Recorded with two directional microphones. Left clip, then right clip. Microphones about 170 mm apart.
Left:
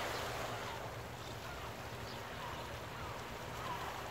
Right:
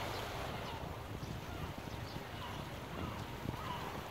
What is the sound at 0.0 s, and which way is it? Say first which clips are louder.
Vehicle: left 2 dB; 45° left (ahead or behind).